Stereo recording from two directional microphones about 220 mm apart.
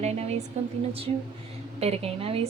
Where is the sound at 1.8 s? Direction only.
30° right (ahead or behind).